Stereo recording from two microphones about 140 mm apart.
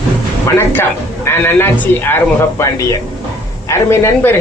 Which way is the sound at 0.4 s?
15° left (ahead or behind).